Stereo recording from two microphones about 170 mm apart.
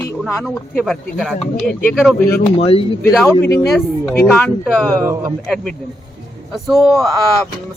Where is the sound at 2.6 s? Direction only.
35° left (ahead or behind).